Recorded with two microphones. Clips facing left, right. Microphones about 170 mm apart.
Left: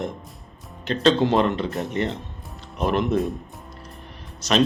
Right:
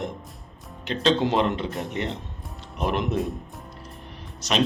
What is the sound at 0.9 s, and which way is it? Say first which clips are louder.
Speech: left 3 dB; 15° right (ahead or behind).